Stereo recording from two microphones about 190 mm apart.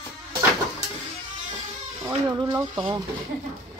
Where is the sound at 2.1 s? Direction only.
20° right (ahead or behind).